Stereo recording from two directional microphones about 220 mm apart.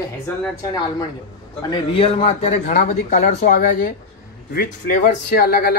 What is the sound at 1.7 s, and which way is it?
A man's voice, 25° left (ahead or behind).